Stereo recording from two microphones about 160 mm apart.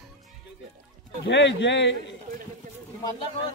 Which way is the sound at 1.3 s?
90° left.